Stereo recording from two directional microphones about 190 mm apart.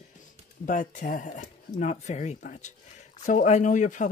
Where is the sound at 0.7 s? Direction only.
40° left (ahead or behind).